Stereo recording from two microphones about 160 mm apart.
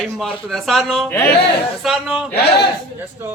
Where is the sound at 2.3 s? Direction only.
90° left.